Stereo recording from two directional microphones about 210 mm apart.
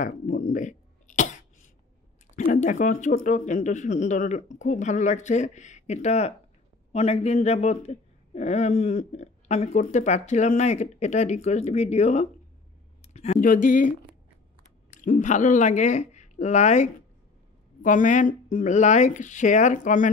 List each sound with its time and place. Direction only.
0.0 s speech: 40° left (ahead or behind)
2.3 s speech: 35° left (ahead or behind)
15.0 s speech: 35° left (ahead or behind)